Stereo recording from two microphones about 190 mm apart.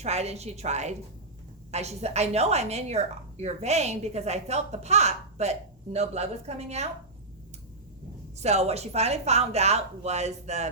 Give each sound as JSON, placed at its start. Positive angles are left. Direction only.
{"t": 0.0, "sound": "a woman's voice", "side_deg": -35}
{"t": 8.4, "sound": "a woman's voice", "side_deg": -35}